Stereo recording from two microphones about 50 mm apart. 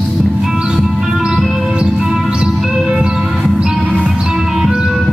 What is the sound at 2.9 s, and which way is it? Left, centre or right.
Music, right.